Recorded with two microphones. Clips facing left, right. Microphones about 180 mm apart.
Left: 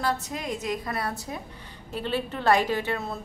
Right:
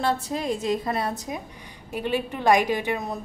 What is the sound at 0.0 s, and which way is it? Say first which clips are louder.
A woman's voice: right 4 dB; 30° right (ahead or behind).